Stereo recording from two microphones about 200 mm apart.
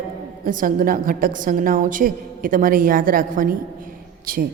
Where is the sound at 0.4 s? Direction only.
45° right (ahead or behind).